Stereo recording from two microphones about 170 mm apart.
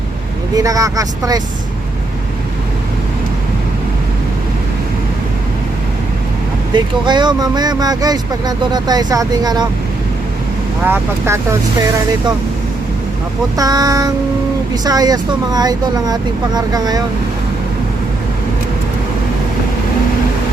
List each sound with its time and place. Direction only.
0.5 s speech: 20° right (ahead or behind)
6.7 s speech: 25° right (ahead or behind)
10.8 s speech: 10° right (ahead or behind)
13.6 s speech: 20° right (ahead or behind)